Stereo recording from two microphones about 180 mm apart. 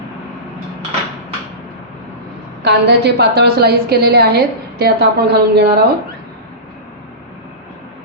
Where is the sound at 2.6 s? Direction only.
65° right (ahead or behind).